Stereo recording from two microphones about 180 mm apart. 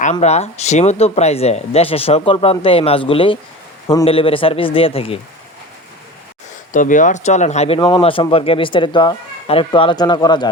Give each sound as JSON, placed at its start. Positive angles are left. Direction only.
{"t": 0.0, "sound": "speech", "side_deg": 40}
{"t": 6.7, "sound": "speech", "side_deg": 45}